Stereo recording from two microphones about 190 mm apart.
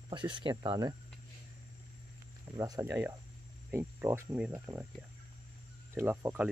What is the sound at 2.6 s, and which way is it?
Speech, 15° right (ahead or behind).